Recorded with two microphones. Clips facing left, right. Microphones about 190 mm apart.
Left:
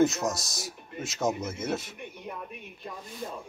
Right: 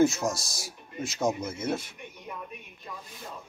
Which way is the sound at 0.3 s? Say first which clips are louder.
Even; 20° left (ahead or behind).